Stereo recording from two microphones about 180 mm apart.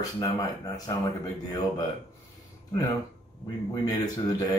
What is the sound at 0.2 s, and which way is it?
Mantra, 20° left (ahead or behind).